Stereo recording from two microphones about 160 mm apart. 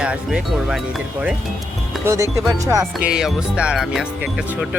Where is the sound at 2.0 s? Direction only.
20° right (ahead or behind).